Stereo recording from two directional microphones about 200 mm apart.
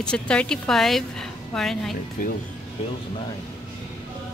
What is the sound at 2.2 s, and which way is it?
Speech, 40° left (ahead or behind).